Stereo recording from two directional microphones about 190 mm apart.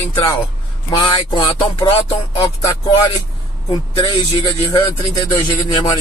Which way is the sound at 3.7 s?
20° left (ahead or behind).